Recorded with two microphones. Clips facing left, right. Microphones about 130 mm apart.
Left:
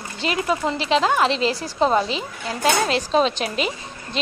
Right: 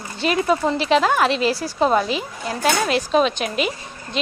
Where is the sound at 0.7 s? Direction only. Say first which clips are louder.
Right 2 dB; 20° left (ahead or behind).